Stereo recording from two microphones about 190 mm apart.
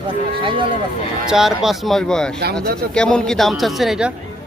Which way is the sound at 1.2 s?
Centre (ahead or behind).